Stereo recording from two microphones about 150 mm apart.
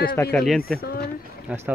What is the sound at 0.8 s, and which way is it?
Speech, 90° left.